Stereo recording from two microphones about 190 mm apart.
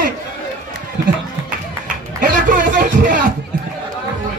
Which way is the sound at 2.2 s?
45° right (ahead or behind).